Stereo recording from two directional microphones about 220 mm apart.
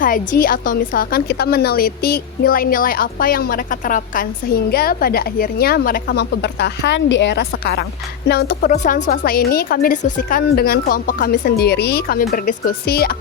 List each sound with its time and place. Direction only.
0.0 s a woman's voice: 40° left (ahead or behind)